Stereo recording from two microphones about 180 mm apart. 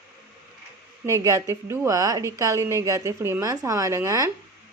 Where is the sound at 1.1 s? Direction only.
15° right (ahead or behind).